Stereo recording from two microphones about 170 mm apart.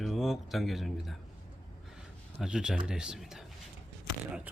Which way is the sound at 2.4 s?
5° right (ahead or behind).